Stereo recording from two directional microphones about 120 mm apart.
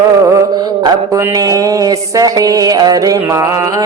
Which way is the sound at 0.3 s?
30° right (ahead or behind).